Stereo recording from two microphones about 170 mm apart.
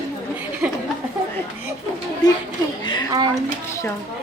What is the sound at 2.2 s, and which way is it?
Speech, 25° left (ahead or behind).